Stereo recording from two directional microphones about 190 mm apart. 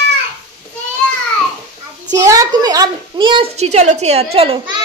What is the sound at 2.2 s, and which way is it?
A woman's voice, 20° right (ahead or behind).